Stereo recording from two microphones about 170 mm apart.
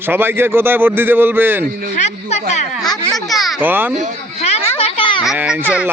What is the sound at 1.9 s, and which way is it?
Speech, 40° left (ahead or behind).